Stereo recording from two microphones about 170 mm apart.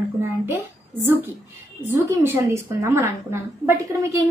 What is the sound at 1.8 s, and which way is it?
A woman's voice, 15° right (ahead or behind).